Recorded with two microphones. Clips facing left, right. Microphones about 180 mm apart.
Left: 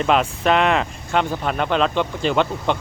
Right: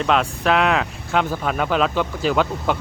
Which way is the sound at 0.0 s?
Centre (ahead or behind).